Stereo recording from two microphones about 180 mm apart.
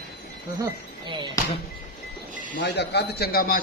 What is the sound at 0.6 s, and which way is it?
Speech, 25° right (ahead or behind).